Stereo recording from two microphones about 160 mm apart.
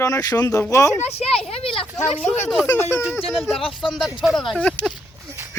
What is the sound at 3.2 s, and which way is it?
Speech, centre (ahead or behind).